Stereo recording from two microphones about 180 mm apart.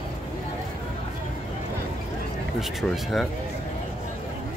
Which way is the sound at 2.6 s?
Centre (ahead or behind).